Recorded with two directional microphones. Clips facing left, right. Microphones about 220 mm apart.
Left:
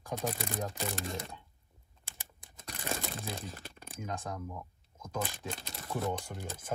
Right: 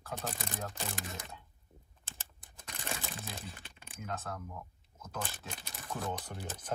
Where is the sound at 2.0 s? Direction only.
15° left (ahead or behind).